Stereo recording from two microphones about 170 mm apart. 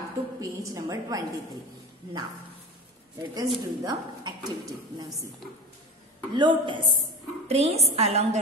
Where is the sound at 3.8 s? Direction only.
25° right (ahead or behind).